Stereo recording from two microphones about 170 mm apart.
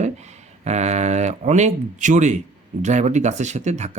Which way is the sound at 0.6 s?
40° right (ahead or behind).